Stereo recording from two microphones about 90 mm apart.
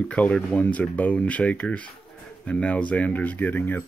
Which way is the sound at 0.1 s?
15° left (ahead or behind).